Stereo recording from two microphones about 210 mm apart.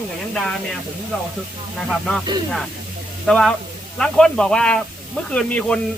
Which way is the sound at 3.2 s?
5° left (ahead or behind).